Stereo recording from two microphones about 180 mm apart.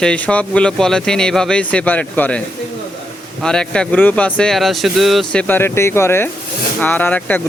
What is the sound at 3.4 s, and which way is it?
Speech, 5° left (ahead or behind).